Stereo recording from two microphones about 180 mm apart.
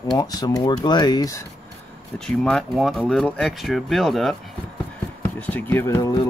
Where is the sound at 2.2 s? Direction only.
5° left (ahead or behind); by 6.3 s 20° left (ahead or behind).